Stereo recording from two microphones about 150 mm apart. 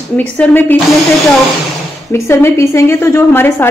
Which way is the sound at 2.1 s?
20° left (ahead or behind).